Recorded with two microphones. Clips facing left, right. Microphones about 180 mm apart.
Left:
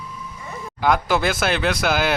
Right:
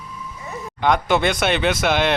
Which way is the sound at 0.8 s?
Centre (ahead or behind).